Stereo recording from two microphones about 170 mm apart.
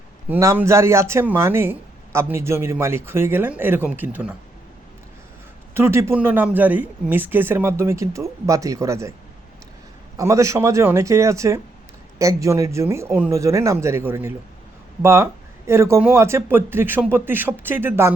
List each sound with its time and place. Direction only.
0.3 s speech: 15° right (ahead or behind)
5.7 s speech: 15° right (ahead or behind)
10.2 s speech: 20° right (ahead or behind)